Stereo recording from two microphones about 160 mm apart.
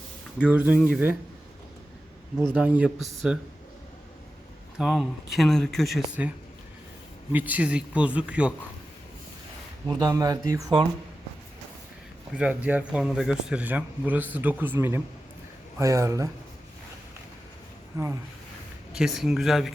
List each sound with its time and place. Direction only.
0.3 s a man's voice: 5° right (ahead or behind)
2.6 s a man's voice: 10° right (ahead or behind)
4.8 s speech: centre (ahead or behind)
7.3 s a man's voice: 10° right (ahead or behind)
9.8 s speech: 25° right (ahead or behind)
12.3 s a man's voice: 10° right (ahead or behind)
17.9 s speech: 15° right (ahead or behind)
18.9 s speech: centre (ahead or behind)